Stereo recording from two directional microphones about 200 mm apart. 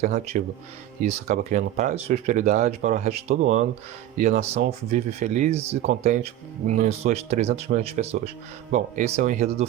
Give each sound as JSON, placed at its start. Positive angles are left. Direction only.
{"t": 0.0, "sound": "speech", "side_deg": -35}